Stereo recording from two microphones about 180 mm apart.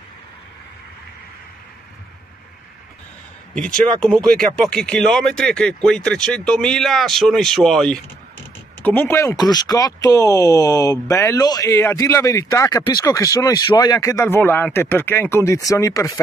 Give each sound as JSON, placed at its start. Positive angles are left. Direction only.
{"t": 3.5, "sound": "speech", "side_deg": 5}